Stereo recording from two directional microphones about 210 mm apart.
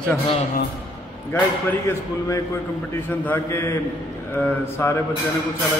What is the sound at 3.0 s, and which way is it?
A man's voice, 10° left (ahead or behind).